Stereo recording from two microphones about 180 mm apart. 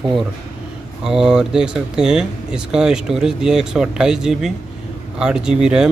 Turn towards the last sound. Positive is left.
turn(degrees=-5)  # may be behind; listen again after turning